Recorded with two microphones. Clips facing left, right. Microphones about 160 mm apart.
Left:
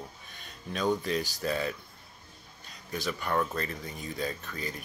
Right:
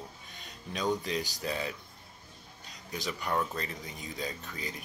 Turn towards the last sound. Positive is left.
turn(degrees=-20)  # may be behind; listen again after turning